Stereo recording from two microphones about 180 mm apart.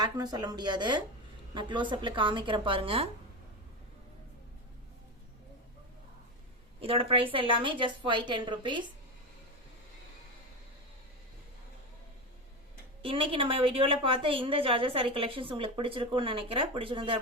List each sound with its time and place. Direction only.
0.0 s a woman's voice: 20° right (ahead or behind)
6.7 s a woman's voice: 30° right (ahead or behind)
13.0 s a woman's voice: 30° right (ahead or behind)